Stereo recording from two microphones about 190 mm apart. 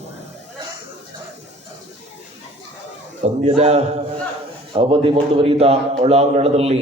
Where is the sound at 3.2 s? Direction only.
35° right (ahead or behind).